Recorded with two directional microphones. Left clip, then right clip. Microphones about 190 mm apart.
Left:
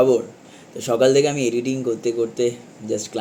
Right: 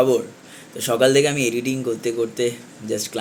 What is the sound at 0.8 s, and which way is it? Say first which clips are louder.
Speech: even; 10° left (ahead or behind).